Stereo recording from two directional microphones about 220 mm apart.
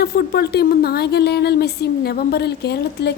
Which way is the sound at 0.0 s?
45° left (ahead or behind).